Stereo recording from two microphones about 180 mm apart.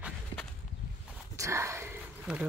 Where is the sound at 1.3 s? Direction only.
15° right (ahead or behind).